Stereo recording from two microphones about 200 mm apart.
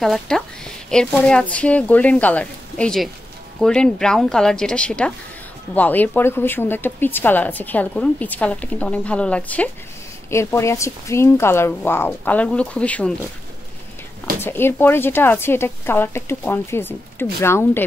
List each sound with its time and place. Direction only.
0.0 s a woman's voice: centre (ahead or behind)
14.4 s speech: 10° left (ahead or behind)